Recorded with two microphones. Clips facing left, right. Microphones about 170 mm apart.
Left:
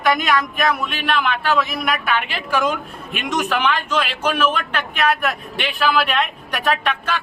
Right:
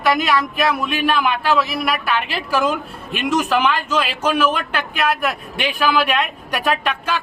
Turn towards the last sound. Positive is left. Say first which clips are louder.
# right 1 dB
turn(degrees=-10)  # may be behind; listen again after turning